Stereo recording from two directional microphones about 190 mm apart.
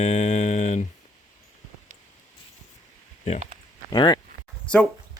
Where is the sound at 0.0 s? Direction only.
35° left (ahead or behind).